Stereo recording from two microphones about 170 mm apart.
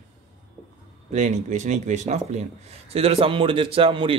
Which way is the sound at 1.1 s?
45° right (ahead or behind).